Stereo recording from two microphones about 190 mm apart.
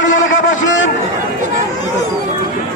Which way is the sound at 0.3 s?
45° left (ahead or behind).